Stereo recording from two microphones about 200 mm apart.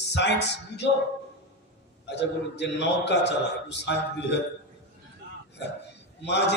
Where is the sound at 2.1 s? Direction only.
60° left (ahead or behind).